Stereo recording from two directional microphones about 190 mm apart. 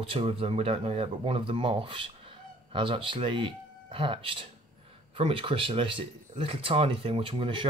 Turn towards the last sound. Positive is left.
turn(degrees=-25)  # may be behind; listen again after turning